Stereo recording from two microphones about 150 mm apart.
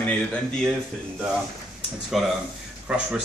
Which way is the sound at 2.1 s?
Centre (ahead or behind).